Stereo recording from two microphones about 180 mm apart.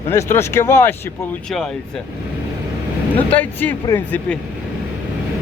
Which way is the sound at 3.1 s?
10° left (ahead or behind).